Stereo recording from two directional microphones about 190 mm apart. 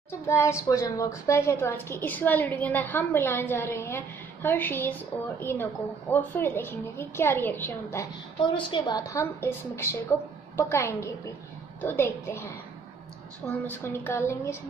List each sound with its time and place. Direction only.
0.1 s a woman's voice: 15° left (ahead or behind)
8.5 s a woman's voice: 25° left (ahead or behind)
13.7 s a woman's voice: 10° left (ahead or behind)